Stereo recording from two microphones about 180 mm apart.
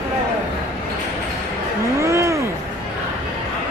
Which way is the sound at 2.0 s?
15° right (ahead or behind).